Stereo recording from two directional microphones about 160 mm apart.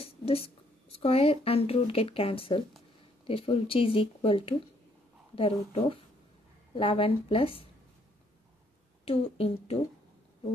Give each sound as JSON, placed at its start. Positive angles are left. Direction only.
{"t": 0.0, "sound": "a sound", "side_deg": 35}
{"t": 0.9, "sound": "speech", "side_deg": 40}
{"t": 9.0, "sound": "speech", "side_deg": 35}